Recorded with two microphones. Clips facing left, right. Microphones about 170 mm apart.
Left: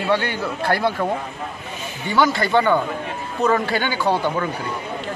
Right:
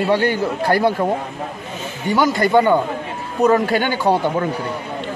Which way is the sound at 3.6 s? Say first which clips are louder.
Right 4 dB; 45° right (ahead or behind).